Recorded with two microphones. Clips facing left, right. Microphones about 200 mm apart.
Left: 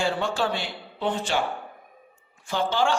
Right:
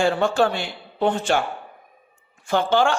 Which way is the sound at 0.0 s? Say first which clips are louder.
Right 6 dB; 50° right (ahead or behind).